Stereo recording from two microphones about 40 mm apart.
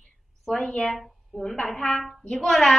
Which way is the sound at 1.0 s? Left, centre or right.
Centre.